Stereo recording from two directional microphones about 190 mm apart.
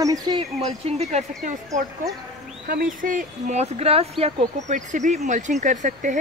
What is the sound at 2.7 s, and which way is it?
Speech, 45° right (ahead or behind).